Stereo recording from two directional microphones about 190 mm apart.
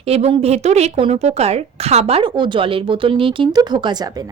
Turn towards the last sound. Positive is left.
turn(degrees=-20)  # may be behind; listen again after turning